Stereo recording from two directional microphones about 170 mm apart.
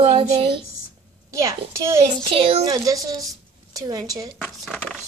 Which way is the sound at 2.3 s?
30° right (ahead or behind).